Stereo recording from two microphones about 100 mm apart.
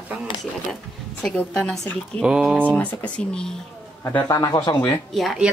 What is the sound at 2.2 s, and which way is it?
Speech, 5° right (ahead or behind).